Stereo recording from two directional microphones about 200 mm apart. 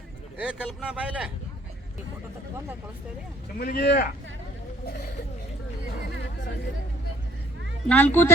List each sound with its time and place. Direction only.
0.3 s speech: 5° right (ahead or behind)
3.6 s speech: 50° left (ahead or behind)
7.9 s a woman's voice: 10° left (ahead or behind)